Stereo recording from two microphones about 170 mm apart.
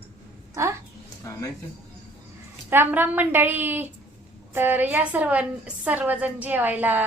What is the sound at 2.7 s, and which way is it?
A woman's voice, 10° right (ahead or behind).